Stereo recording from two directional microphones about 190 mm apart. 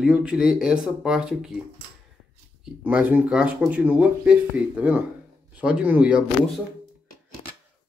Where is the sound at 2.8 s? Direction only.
10° right (ahead or behind).